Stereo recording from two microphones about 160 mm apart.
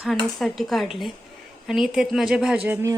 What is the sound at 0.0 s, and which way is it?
A woman's voice, centre (ahead or behind).